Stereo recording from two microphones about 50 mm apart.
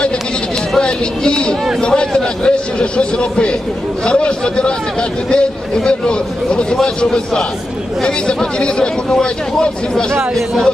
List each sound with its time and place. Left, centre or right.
0.8 s a man's voice: centre